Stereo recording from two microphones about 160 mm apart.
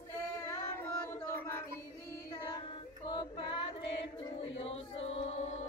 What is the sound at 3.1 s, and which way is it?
Child singing, 25° left (ahead or behind).